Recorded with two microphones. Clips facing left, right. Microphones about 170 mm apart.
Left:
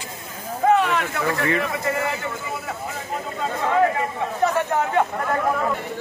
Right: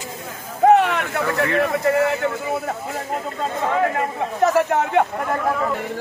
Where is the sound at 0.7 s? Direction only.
60° right (ahead or behind).